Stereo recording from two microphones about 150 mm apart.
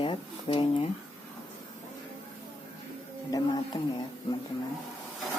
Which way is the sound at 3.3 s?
25° left (ahead or behind).